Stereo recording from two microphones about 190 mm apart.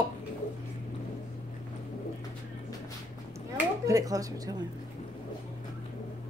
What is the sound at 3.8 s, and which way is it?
Speech, 20° right (ahead or behind).